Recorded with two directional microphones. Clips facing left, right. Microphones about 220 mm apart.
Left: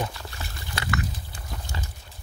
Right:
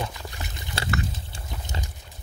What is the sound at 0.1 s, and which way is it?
Pig, 20° right (ahead or behind).